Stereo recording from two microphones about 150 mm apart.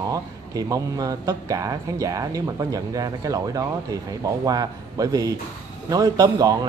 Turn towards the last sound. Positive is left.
turn(degrees=-25)  # may be behind; listen again after turning